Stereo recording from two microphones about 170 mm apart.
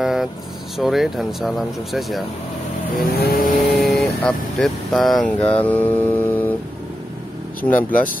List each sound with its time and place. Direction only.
0.0 s vehicle: centre (ahead or behind)
0.7 s speech: centre (ahead or behind)
3.2 s vehicle: 60° left (ahead or behind)
3.8 s speech: 5° left (ahead or behind)
7.6 s speech: 10° left (ahead or behind)